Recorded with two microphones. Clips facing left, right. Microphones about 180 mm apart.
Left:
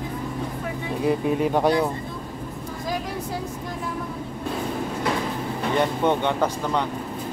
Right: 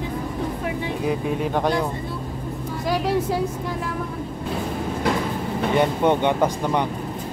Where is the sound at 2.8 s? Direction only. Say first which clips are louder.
Right 6 dB; 75° right (ahead or behind).